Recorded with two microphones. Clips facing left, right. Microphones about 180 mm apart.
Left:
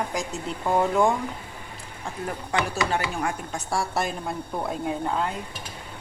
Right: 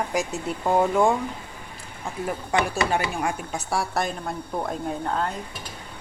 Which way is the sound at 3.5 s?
5° right (ahead or behind).